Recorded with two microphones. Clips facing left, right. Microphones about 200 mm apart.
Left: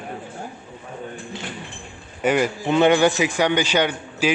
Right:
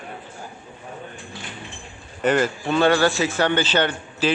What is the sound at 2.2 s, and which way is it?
A man's voice, 10° left (ahead or behind).